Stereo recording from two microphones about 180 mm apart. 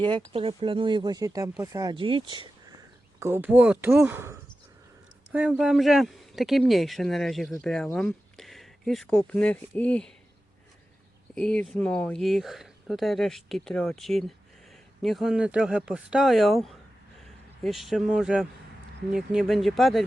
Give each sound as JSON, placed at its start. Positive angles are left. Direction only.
{"t": 0.3, "sound": "speech", "side_deg": -30}
{"t": 3.2, "sound": "speech", "side_deg": -15}
{"t": 11.3, "sound": "speech", "side_deg": 5}